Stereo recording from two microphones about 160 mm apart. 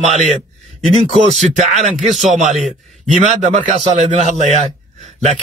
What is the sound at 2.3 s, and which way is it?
A man's voice, 45° right (ahead or behind).